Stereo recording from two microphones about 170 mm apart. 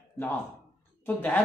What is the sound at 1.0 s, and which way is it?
Speech, 10° left (ahead or behind).